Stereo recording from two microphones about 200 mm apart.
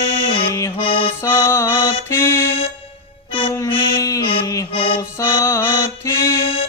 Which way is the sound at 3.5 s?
15° left (ahead or behind).